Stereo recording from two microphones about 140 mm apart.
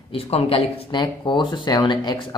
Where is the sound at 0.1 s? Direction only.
45° left (ahead or behind).